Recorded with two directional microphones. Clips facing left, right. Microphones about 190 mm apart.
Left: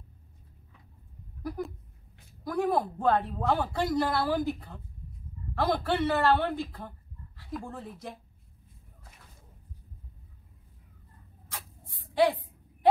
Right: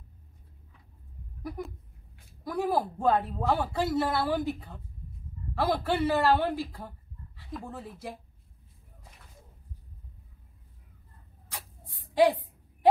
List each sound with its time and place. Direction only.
1.4 s a woman's voice: centre (ahead or behind)